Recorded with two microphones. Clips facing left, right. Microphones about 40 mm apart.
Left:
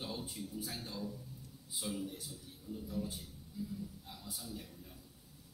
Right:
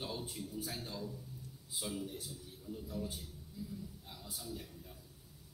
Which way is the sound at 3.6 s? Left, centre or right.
Left.